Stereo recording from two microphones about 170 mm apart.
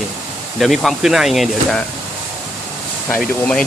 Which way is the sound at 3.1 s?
10° left (ahead or behind).